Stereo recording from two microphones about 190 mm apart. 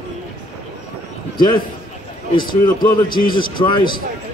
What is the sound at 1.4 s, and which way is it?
A man's voice, 25° left (ahead or behind).